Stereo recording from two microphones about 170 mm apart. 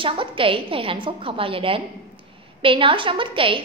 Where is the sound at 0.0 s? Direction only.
30° right (ahead or behind).